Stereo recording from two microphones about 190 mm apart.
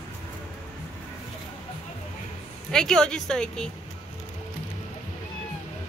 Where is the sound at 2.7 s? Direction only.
5° left (ahead or behind).